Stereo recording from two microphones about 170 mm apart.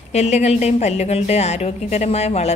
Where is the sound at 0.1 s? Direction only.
40° left (ahead or behind).